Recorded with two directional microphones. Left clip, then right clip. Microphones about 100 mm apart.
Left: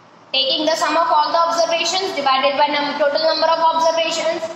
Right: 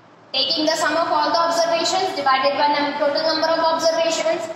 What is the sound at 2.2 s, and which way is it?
Speech, 20° left (ahead or behind).